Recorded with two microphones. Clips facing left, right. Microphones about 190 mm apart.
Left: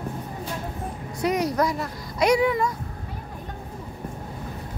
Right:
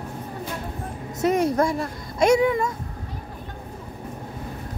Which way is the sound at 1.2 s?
25° right (ahead or behind).